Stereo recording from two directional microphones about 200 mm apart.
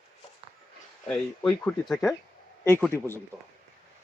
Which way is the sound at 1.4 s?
10° left (ahead or behind).